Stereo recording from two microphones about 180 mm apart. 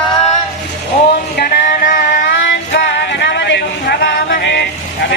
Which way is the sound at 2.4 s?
70° left (ahead or behind).